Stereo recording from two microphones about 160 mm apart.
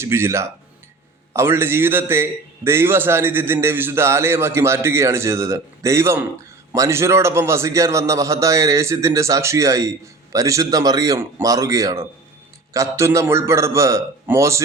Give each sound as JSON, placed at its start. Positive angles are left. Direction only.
{"t": 0.0, "sound": "a man's voice", "side_deg": -15}